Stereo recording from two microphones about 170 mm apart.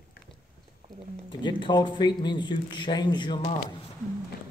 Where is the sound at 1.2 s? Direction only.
25° left (ahead or behind).